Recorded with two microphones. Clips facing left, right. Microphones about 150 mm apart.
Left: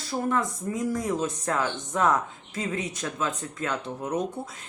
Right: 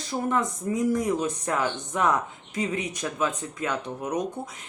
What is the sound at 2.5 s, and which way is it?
Speech, 15° right (ahead or behind).